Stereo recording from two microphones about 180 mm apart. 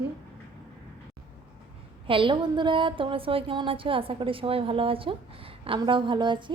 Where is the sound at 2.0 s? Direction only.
30° right (ahead or behind).